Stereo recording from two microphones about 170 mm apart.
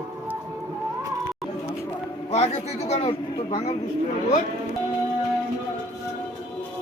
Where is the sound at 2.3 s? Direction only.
40° left (ahead or behind).